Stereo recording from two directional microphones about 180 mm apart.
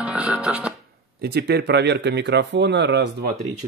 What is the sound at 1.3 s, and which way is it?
Speech, 65° right (ahead or behind).